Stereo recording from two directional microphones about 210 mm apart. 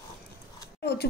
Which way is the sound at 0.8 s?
50° left (ahead or behind).